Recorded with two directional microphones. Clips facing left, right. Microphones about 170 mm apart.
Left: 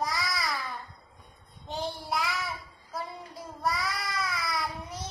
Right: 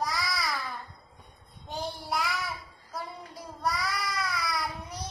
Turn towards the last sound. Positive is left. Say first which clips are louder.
# even
turn(degrees=0)  # may be behind; listen again after turning